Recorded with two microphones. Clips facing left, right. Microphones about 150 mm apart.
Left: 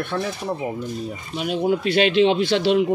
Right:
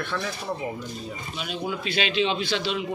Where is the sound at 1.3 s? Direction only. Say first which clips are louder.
Left 10 dB; 55° left (ahead or behind).